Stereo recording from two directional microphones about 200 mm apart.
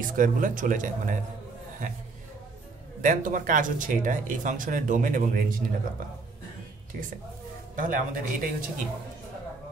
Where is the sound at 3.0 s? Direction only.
40° right (ahead or behind).